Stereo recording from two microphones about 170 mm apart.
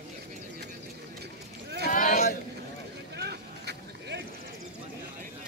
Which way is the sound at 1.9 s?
50° left (ahead or behind).